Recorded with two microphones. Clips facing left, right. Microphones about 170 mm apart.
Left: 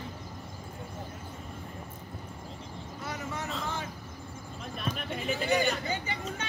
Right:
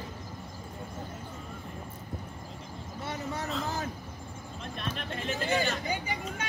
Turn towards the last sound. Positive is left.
turn(degrees=-10)  # may be behind; listen again after turning